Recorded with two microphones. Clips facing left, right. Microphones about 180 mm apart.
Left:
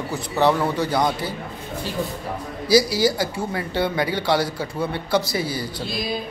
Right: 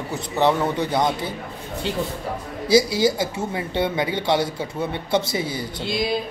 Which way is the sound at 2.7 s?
25° right (ahead or behind).